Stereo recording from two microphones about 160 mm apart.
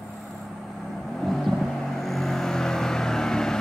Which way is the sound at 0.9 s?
Centre (ahead or behind).